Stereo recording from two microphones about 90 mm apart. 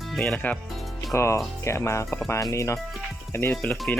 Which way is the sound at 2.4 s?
35° left (ahead or behind).